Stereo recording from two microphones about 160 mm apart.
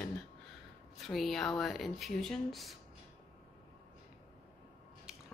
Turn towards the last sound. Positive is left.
turn(degrees=-5)  # may be behind; listen again after turning